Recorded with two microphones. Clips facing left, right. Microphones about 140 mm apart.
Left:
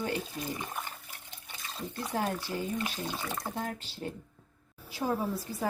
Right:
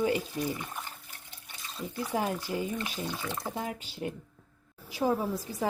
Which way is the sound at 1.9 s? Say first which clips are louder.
Right 2 dB; 10° right (ahead or behind).